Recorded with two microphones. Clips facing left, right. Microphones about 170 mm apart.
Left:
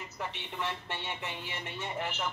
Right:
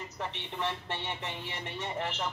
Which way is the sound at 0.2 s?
30° right (ahead or behind).